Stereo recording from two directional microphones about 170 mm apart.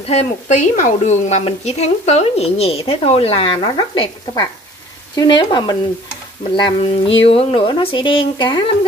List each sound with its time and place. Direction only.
0.0 s a woman's voice: 40° left (ahead or behind)